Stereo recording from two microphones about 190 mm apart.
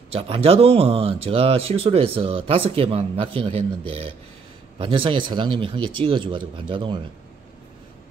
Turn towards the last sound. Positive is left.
turn(degrees=-25)  # may be behind; listen again after turning